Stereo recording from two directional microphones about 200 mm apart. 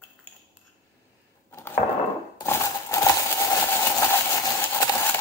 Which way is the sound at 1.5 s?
10° left (ahead or behind).